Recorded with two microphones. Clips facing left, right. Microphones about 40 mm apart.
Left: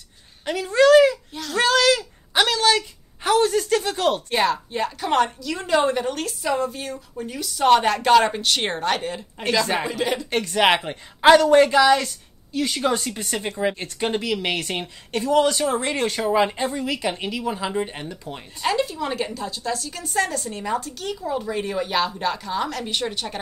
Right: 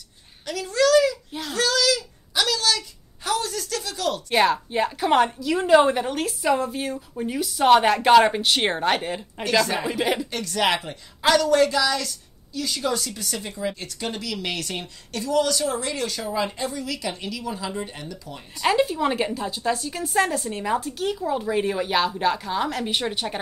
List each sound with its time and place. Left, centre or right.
0.5 s a sound: left
4.3 s a woman's voice: centre
10.3 s a woman's voice: left
18.6 s a woman's voice: centre